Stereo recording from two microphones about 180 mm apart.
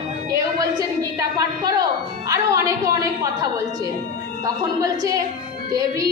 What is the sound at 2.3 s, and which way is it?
Speech, 20° right (ahead or behind).